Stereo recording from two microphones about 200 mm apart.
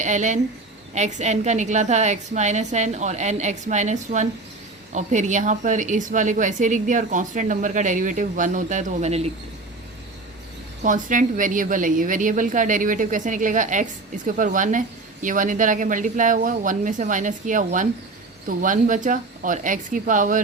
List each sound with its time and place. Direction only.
0.0 s a woman's voice: 35° right (ahead or behind)
10.8 s a woman's voice: 40° right (ahead or behind)